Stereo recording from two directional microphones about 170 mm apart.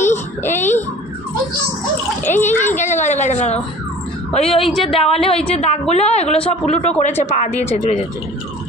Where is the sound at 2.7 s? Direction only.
45° left (ahead or behind).